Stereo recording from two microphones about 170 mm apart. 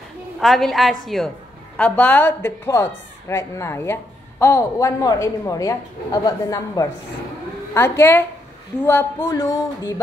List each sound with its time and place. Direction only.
0.4 s a woman's voice: centre (ahead or behind); by 9.9 s 20° left (ahead or behind)